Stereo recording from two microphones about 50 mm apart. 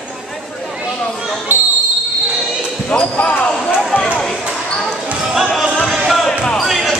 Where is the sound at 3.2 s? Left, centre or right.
Left.